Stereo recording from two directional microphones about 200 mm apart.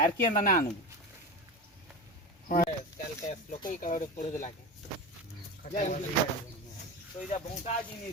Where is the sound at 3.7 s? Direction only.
40° left (ahead or behind).